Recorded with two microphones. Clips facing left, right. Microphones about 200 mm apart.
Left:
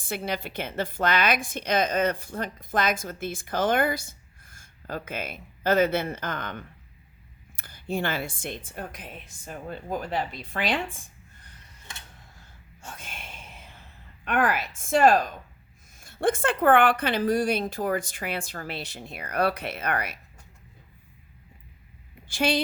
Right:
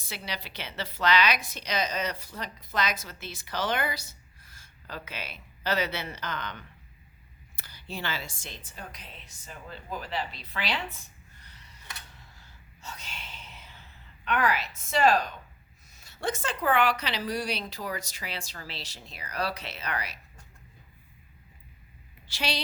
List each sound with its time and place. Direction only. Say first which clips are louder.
0.0 s a woman's voice: left 8 dB; 50° left (ahead or behind)
12.4 s a sound: left 4 dB; 50° left (ahead or behind)
14.3 s a woman's voice: left 3 dB; 50° left (ahead or behind)
22.3 s a woman's voice: left 8 dB; 50° left (ahead or behind)